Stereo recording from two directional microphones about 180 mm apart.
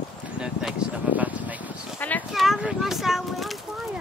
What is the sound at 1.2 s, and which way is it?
Speech, 10° right (ahead or behind).